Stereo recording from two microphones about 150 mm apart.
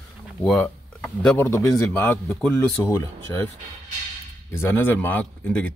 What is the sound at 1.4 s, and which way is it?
Speech, 15° left (ahead or behind).